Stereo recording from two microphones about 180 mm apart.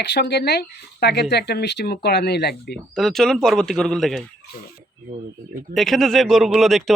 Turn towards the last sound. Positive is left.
turn(degrees=0)  # may be behind; listen again after turning